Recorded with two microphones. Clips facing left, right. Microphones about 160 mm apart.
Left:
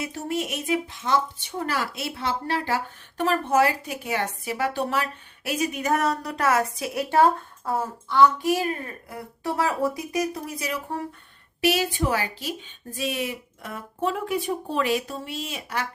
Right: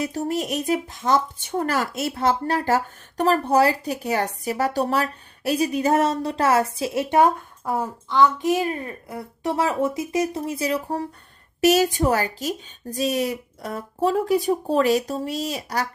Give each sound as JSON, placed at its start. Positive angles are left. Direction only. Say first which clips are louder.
{"t": 0.0, "sound": "speech", "louder": "right 4 dB", "side_deg": -40}
{"t": 11.6, "sound": "speech", "louder": "right 6 dB", "side_deg": -40}